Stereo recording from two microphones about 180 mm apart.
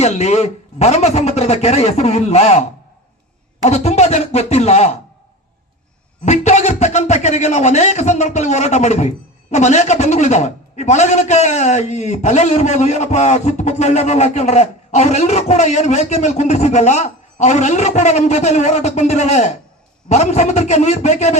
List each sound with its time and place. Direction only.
0.0 s a man's voice: 35° left (ahead or behind)
6.2 s a man's voice: 40° left (ahead or behind)